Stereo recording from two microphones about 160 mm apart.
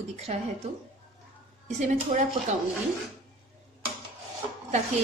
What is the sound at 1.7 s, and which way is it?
Speech, 50° right (ahead or behind).